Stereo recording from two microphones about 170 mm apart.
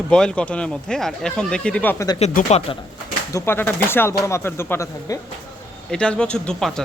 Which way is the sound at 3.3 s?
15° left (ahead or behind).